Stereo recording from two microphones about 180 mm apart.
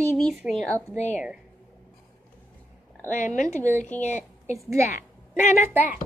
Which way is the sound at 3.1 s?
45° left (ahead or behind).